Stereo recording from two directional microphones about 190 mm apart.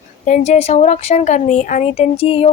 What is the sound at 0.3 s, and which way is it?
Speech, 40° left (ahead or behind).